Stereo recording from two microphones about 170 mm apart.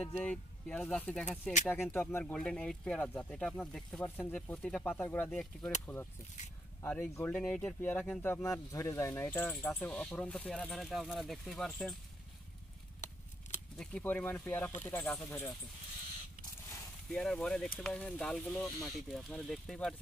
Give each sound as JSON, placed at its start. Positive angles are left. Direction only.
{"t": 0.1, "sound": "speech", "side_deg": 5}
{"t": 13.7, "sound": "speech", "side_deg": 5}
{"t": 16.6, "sound": "a sound", "side_deg": 15}
{"t": 17.1, "sound": "speech", "side_deg": 5}
{"t": 18.5, "sound": "speech", "side_deg": 15}
{"t": 19.0, "sound": "speech", "side_deg": 5}